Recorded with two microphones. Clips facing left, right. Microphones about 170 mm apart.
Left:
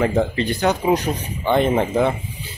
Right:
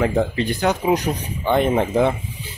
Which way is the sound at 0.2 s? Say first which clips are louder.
Left 1 dB; 15° right (ahead or behind).